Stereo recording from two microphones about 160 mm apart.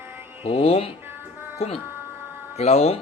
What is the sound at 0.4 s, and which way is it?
A man's voice, 40° left (ahead or behind).